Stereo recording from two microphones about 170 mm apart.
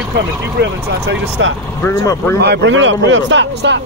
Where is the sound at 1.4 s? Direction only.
90° right.